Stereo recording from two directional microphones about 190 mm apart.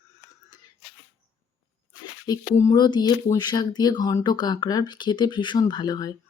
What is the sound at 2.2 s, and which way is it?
Speech, 20° left (ahead or behind).